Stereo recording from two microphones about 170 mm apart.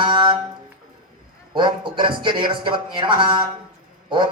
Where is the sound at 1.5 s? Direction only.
30° right (ahead or behind).